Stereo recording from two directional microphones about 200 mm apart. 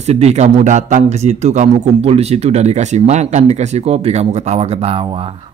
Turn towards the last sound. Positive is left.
turn(degrees=-30)  # may be behind; listen again after turning